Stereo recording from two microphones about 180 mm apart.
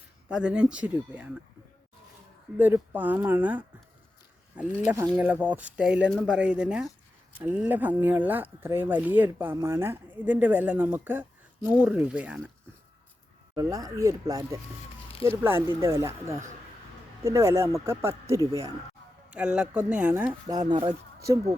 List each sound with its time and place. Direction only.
0.3 s speech: 5° right (ahead or behind)
2.6 s speech: 10° right (ahead or behind)
13.6 s speech: 20° right (ahead or behind)
19.3 s speech: 5° right (ahead or behind)
20.5 s speech: 25° right (ahead or behind)